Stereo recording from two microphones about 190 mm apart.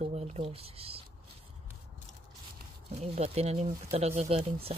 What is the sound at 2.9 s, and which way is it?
Speech, 35° right (ahead or behind).